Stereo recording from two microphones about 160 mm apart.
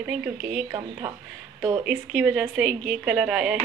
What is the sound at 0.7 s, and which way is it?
A woman's voice, 20° right (ahead or behind).